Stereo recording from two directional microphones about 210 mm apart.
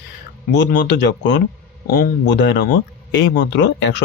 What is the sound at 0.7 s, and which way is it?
Speech, 55° left (ahead or behind).